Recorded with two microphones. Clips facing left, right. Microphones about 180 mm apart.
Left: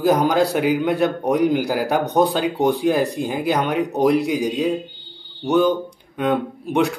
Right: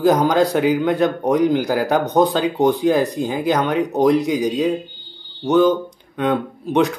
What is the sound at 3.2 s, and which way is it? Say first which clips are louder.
Speech: right 2 dB; 10° left (ahead or behind).